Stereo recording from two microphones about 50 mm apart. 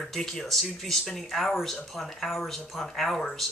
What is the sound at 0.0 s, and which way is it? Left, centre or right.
Speech, centre.